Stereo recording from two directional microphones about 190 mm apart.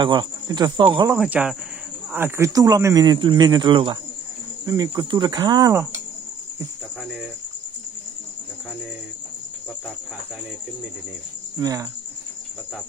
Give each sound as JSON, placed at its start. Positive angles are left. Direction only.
{"t": 0.0, "sound": "speech", "side_deg": -25}
{"t": 1.1, "sound": "speech", "side_deg": -5}
{"t": 11.5, "sound": "cricket", "side_deg": -20}